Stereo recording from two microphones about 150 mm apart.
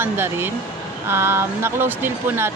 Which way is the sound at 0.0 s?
15° right (ahead or behind).